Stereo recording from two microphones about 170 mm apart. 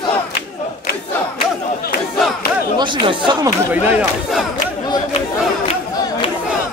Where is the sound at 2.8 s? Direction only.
30° right (ahead or behind).